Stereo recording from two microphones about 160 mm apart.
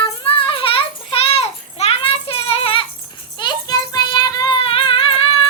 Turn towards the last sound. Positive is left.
turn(degrees=35)  # may be behind; listen again after turning